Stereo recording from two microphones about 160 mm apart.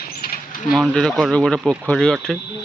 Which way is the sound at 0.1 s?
70° left (ahead or behind).